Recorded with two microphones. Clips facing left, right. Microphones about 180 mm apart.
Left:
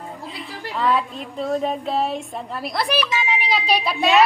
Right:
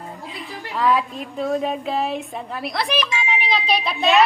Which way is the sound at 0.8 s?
Centre (ahead or behind).